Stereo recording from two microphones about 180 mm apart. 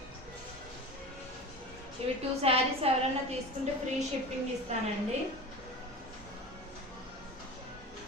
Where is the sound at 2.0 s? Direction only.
35° right (ahead or behind).